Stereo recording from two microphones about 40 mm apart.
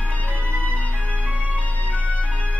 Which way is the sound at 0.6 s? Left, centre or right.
Left.